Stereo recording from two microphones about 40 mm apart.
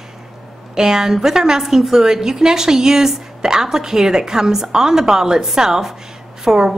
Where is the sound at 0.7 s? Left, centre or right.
Centre.